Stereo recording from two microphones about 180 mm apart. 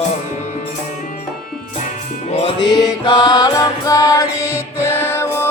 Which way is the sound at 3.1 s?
25° left (ahead or behind).